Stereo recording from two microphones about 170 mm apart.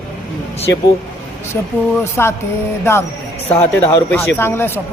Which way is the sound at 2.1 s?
15° left (ahead or behind).